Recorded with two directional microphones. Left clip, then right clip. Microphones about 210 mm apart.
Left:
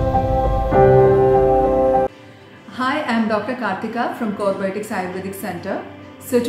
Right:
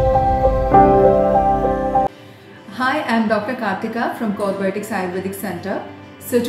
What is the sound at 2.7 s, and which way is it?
A woman's voice, 10° left (ahead or behind).